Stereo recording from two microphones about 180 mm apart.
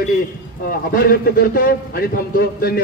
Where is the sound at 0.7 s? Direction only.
55° left (ahead or behind).